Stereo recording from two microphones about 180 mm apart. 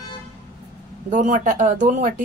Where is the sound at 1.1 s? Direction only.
45° right (ahead or behind).